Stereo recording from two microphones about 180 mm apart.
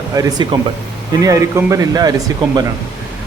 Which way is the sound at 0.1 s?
20° right (ahead or behind).